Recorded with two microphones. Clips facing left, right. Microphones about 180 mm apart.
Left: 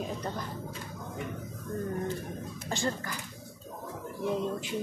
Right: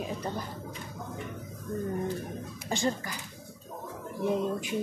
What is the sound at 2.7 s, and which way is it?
Speech, 15° right (ahead or behind).